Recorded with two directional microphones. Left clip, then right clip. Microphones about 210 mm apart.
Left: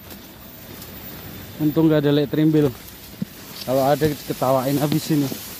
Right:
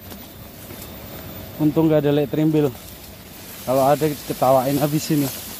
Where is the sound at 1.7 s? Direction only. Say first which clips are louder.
Even; 15° left (ahead or behind).